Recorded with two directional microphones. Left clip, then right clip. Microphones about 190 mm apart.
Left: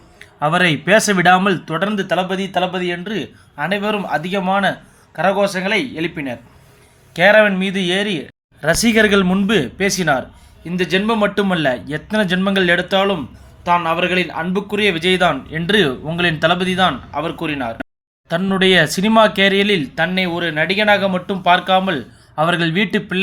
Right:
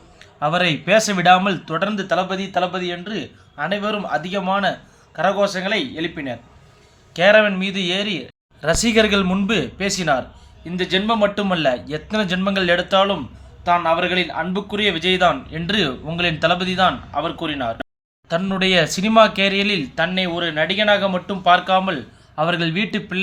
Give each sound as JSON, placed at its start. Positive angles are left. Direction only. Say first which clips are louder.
{"t": 0.2, "sound": "speech", "louder": "left 3 dB", "side_deg": 25}